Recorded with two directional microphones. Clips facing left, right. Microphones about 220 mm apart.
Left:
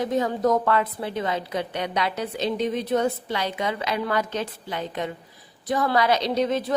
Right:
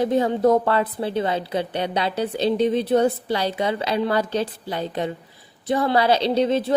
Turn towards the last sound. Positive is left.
turn(degrees=-30)  # may be behind; listen again after turning